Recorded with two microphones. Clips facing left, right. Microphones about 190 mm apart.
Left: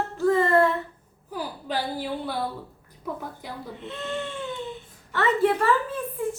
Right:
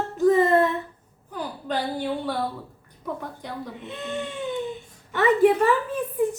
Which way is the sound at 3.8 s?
15° right (ahead or behind).